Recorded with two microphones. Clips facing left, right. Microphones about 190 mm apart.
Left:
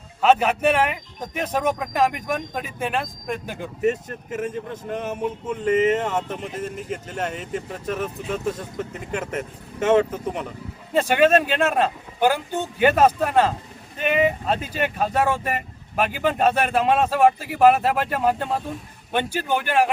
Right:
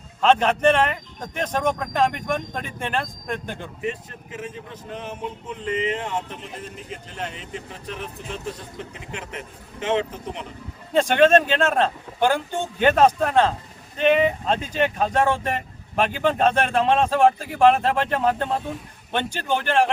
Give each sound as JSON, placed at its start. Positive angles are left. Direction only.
{"t": 0.2, "sound": "speech", "side_deg": 10}
{"t": 3.8, "sound": "a man's voice", "side_deg": 50}
{"t": 10.9, "sound": "speech", "side_deg": 10}